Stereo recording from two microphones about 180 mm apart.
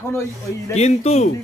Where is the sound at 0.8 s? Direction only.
35° left (ahead or behind).